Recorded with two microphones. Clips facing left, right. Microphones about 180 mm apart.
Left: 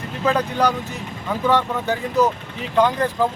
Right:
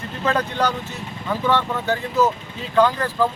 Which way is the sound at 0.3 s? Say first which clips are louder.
Left 2 dB; 10° left (ahead or behind).